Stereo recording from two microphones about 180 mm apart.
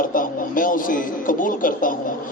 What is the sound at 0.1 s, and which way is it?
A man's voice, 50° left (ahead or behind).